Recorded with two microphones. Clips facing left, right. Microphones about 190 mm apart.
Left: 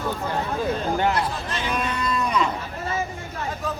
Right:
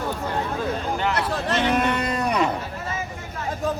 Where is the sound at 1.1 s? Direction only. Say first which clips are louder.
Right 3 dB; 70° right (ahead or behind).